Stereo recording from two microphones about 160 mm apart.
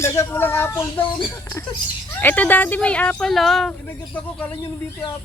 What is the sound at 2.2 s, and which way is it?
Speech, 10° left (ahead or behind).